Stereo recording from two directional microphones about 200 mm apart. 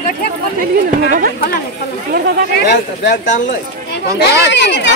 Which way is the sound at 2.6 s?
55° left (ahead or behind).